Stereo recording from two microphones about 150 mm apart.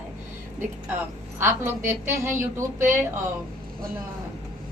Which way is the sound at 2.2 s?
15° right (ahead or behind).